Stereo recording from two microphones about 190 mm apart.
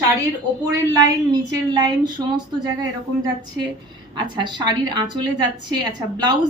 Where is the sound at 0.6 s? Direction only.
20° right (ahead or behind).